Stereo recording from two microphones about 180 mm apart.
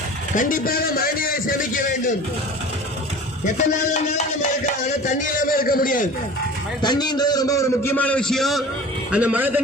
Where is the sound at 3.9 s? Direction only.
40° left (ahead or behind).